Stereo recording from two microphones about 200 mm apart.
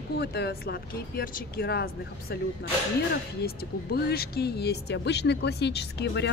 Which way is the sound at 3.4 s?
50° left (ahead or behind).